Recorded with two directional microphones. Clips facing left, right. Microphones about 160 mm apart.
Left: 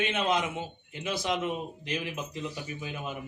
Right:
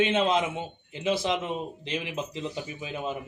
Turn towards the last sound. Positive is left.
turn(degrees=-25)  # may be behind; listen again after turning